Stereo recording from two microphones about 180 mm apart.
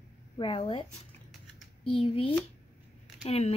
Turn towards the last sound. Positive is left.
turn(degrees=35)  # may be behind; listen again after turning